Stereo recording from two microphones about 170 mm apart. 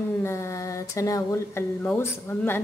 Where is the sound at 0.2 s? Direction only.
15° left (ahead or behind).